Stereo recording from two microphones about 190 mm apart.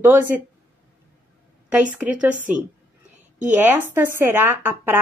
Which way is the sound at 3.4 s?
10° right (ahead or behind).